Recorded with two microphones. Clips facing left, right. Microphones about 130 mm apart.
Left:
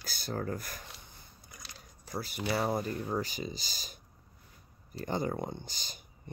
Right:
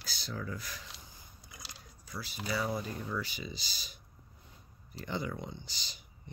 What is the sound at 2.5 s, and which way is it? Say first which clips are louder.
Speech: left 3 dB; 50° left (ahead or behind).